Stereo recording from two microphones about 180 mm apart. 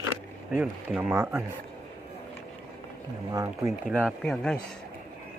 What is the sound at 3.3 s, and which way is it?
Speech, 20° right (ahead or behind).